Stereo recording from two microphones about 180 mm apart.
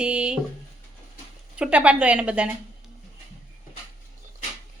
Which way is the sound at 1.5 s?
5° right (ahead or behind).